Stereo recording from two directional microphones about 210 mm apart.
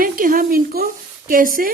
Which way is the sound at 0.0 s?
40° right (ahead or behind).